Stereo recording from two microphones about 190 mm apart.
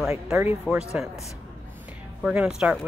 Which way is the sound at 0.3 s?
5° right (ahead or behind).